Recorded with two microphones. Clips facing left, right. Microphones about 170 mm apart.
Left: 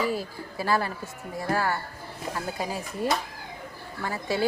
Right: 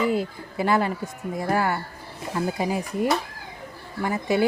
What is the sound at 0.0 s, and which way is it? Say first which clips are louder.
A woman's voice: right 4 dB; 20° right (ahead or behind).